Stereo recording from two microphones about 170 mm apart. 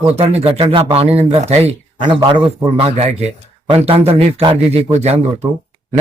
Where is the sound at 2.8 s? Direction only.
40° right (ahead or behind).